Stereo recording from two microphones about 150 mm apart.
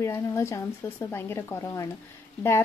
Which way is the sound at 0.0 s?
20° left (ahead or behind).